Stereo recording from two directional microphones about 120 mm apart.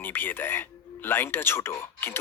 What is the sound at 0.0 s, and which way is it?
Speech, 15° left (ahead or behind).